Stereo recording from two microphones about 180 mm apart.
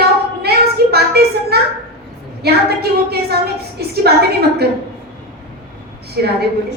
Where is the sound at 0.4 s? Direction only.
65° right (ahead or behind).